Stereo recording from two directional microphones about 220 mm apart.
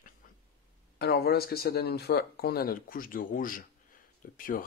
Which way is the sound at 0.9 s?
45° left (ahead or behind).